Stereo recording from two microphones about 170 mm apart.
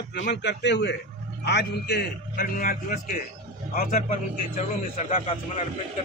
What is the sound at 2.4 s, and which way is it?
A man's voice, 55° left (ahead or behind).